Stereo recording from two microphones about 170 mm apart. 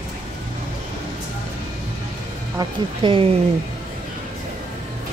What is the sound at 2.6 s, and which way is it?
Speech, 30° right (ahead or behind).